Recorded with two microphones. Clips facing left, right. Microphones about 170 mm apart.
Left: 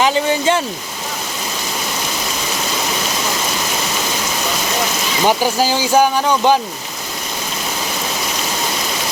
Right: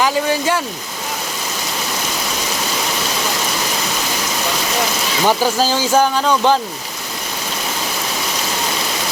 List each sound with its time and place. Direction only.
0.0 s speech: 25° left (ahead or behind)
5.2 s speech: 15° left (ahead or behind)